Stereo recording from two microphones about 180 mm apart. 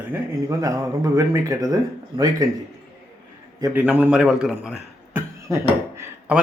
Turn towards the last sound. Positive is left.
turn(degrees=-15)  # may be behind; listen again after turning